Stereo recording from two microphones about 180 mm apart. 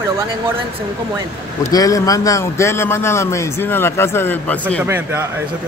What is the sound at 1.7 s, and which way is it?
A man's voice, 20° left (ahead or behind).